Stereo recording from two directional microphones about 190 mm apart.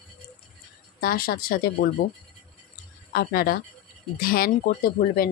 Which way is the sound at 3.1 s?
55° left (ahead or behind).